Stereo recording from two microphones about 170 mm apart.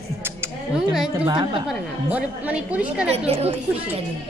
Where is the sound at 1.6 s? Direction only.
10° right (ahead or behind).